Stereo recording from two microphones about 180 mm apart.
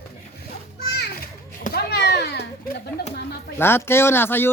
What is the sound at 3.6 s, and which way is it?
Speech, 10° left (ahead or behind).